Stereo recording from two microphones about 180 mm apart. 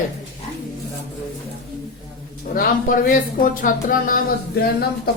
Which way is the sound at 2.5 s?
50° left (ahead or behind).